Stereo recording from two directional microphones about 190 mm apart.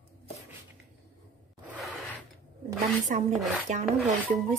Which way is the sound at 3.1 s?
40° right (ahead or behind).